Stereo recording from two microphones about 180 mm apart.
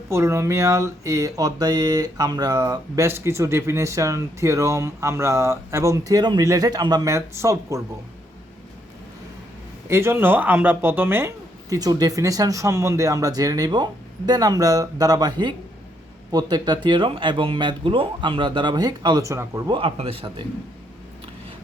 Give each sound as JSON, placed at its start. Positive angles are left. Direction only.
{"t": 0.1, "sound": "speech", "side_deg": -15}
{"t": 9.9, "sound": "speech", "side_deg": -15}
{"t": 19.7, "sound": "speech", "side_deg": -30}